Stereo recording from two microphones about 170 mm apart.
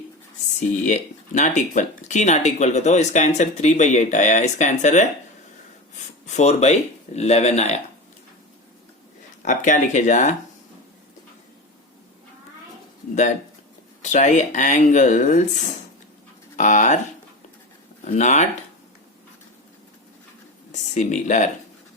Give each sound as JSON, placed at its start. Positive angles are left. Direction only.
{"t": 0.9, "sound": "speech", "side_deg": 45}
{"t": 6.3, "sound": "speech", "side_deg": 40}
{"t": 9.4, "sound": "speech", "side_deg": 50}
{"t": 14.0, "sound": "speech", "side_deg": 45}
{"t": 18.0, "sound": "speech", "side_deg": 45}
{"t": 20.9, "sound": "speech", "side_deg": 45}